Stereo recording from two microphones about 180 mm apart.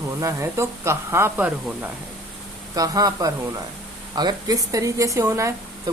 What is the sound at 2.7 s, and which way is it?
Speech, 20° right (ahead or behind).